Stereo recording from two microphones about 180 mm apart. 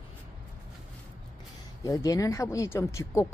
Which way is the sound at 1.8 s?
20° left (ahead or behind).